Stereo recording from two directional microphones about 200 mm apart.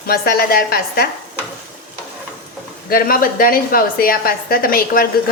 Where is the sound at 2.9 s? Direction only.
45° left (ahead or behind).